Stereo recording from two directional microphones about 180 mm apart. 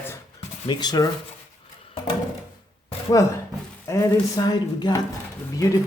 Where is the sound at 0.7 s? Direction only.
25° left (ahead or behind).